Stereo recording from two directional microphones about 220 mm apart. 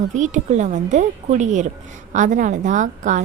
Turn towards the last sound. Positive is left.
turn(degrees=-35)  # may be behind; listen again after turning